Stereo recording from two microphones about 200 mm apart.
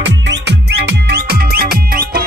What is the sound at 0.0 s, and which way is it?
Music, 60° right (ahead or behind).